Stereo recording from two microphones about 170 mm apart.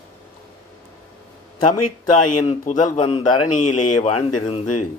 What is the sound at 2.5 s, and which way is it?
Speech, 45° left (ahead or behind).